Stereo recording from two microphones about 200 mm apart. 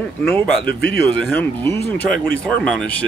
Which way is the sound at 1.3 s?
10° left (ahead or behind).